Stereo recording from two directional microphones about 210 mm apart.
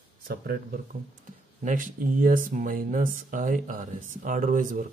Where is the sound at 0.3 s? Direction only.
50° right (ahead or behind).